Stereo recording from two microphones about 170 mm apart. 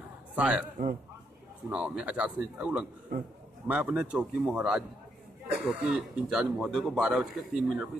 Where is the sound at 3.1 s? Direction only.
60° right (ahead or behind).